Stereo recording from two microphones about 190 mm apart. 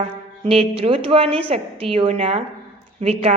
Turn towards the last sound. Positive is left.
turn(degrees=-35)  # may be behind; listen again after turning